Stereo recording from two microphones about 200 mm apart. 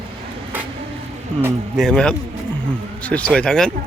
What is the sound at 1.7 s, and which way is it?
Speech, centre (ahead or behind).